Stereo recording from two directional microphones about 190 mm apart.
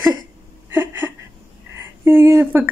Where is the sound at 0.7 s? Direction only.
10° right (ahead or behind).